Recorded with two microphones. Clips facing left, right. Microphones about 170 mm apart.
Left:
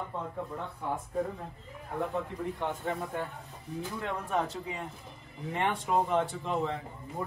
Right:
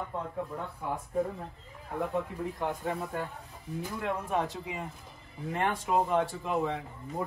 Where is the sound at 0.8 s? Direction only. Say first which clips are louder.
Right 1 dB; 5° right (ahead or behind).